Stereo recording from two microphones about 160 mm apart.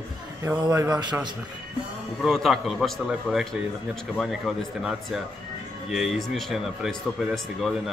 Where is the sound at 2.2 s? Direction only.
Centre (ahead or behind).